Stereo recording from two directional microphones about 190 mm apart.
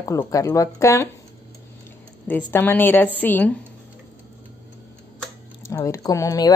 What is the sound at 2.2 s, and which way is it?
Speech, 10° left (ahead or behind).